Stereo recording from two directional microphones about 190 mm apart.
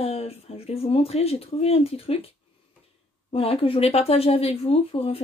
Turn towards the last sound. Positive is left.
turn(degrees=30)  # may be behind; listen again after turning